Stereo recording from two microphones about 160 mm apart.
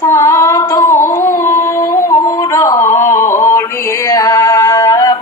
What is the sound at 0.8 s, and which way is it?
Music, 55° left (ahead or behind).